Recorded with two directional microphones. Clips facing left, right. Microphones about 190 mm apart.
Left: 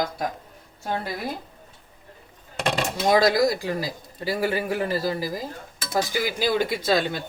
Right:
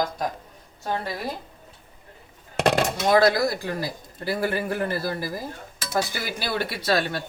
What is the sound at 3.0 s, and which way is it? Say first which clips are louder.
Speech: left 1 dB; 15° left (ahead or behind).